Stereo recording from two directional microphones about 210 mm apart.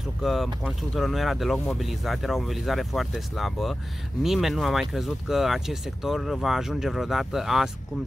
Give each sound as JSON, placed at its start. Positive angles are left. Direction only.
{"t": 0.2, "sound": "speech", "side_deg": 0}